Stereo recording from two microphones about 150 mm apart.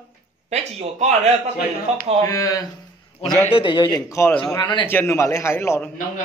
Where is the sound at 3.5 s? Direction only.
35° left (ahead or behind).